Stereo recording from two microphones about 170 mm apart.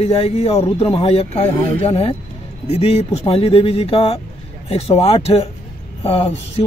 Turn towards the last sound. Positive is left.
turn(degrees=35)  # may be behind; listen again after turning